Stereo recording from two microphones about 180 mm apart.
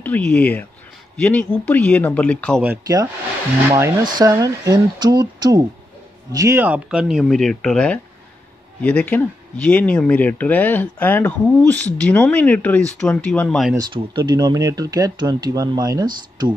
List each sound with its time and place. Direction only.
0.0 s speech: 5° left (ahead or behind)
2.6 s speech: 15° right (ahead or behind); by 13.7 s 5° left (ahead or behind)
13.7 s speech: 25° right (ahead or behind)